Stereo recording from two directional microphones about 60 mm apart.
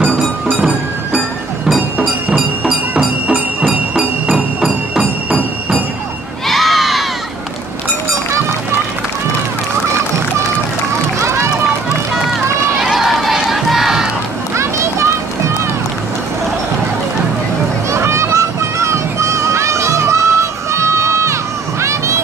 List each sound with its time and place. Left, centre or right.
0.6 s music: centre
3.6 s music: centre
6.4 s crowd: centre
11.2 s run: right
12.8 s run: centre
13.5 s crowd: centre
14.6 s children playing: right
17.9 s a sound: right
21.8 s music: right